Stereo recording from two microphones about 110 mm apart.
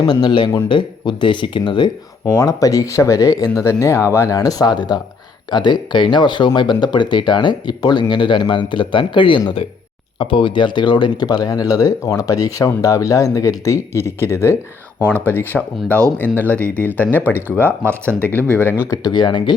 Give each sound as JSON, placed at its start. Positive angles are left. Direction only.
{"t": 0.0, "sound": "speech", "side_deg": 40}
{"t": 2.3, "sound": "speech", "side_deg": 30}
{"t": 15.9, "sound": "speech", "side_deg": -25}
{"t": 16.4, "sound": "speech", "side_deg": 15}
{"t": 17.7, "sound": "speech", "side_deg": -20}
{"t": 18.4, "sound": "speech", "side_deg": 15}
{"t": 18.9, "sound": "speech", "side_deg": 40}